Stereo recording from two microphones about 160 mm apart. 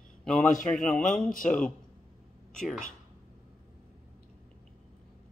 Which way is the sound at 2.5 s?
Centre (ahead or behind).